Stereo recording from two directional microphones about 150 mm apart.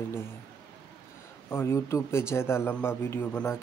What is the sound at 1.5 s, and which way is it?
A man's voice, 15° left (ahead or behind).